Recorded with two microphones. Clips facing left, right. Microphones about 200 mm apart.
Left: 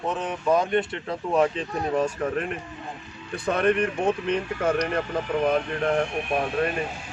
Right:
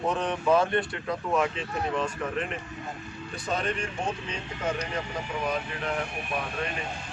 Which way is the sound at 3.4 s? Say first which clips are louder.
Left 8 dB; 60° left (ahead or behind).